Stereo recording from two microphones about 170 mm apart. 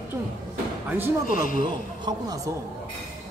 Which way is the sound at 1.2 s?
55° left (ahead or behind).